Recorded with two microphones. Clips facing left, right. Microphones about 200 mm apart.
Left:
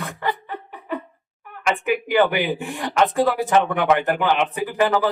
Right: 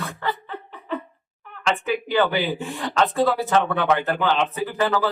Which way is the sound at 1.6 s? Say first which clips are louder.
Left 2 dB; 15° left (ahead or behind).